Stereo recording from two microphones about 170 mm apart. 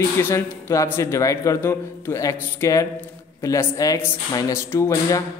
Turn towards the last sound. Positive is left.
turn(degrees=15)  # may be behind; listen again after turning